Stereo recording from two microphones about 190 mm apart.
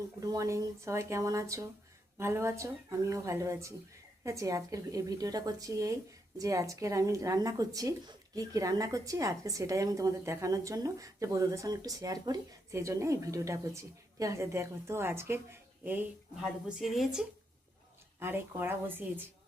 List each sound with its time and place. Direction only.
0.2 s a woman's voice: 15° right (ahead or behind)
16.4 s a woman's voice: 5° right (ahead or behind)